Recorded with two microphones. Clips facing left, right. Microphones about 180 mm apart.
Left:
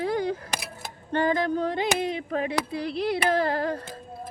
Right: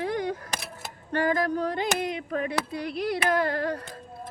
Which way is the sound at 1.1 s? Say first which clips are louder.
Left 1 dB; 25° left (ahead or behind).